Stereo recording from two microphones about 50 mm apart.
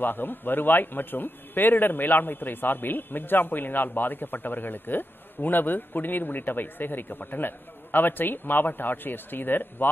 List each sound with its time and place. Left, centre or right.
0.0 s a man's voice: left